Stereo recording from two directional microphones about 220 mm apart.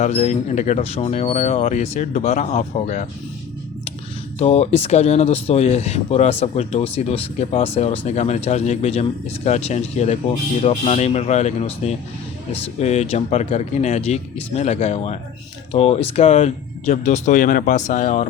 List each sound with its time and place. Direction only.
0.0 s speech: 30° left (ahead or behind)
4.4 s speech: 30° left (ahead or behind)